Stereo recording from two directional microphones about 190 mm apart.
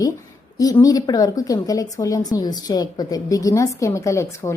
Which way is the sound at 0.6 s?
20° left (ahead or behind).